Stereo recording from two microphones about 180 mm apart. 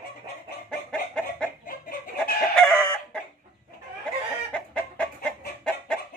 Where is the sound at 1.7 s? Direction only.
55° left (ahead or behind).